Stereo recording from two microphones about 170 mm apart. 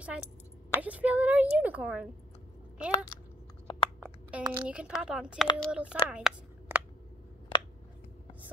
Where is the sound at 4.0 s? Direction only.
10° right (ahead or behind).